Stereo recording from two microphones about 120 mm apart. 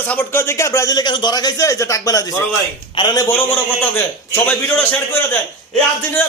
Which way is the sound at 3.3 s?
15° left (ahead or behind).